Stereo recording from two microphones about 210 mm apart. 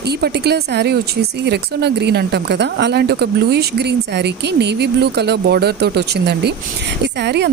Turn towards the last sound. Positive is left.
turn(degrees=-55)  # may be behind; listen again after turning